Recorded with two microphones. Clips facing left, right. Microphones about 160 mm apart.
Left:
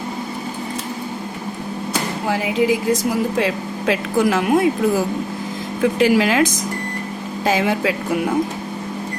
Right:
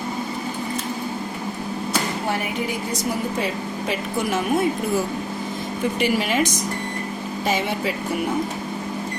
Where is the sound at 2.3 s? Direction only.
90° left.